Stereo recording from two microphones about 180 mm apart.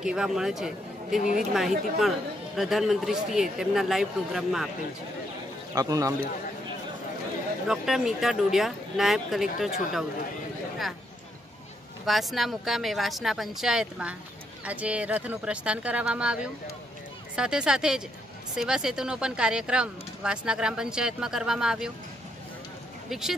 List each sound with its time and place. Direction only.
0.0 s speech: 5° right (ahead or behind)
5.8 s a man's voice: 20° right (ahead or behind)
7.6 s speech: 5° right (ahead or behind)
12.1 s speech: centre (ahead or behind)
23.0 s speech: centre (ahead or behind)